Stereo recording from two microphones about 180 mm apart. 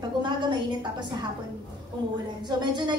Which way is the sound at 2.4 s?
25° right (ahead or behind).